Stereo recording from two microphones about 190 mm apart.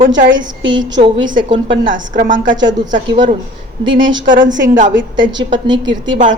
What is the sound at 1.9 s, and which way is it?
Speech, 45° right (ahead or behind).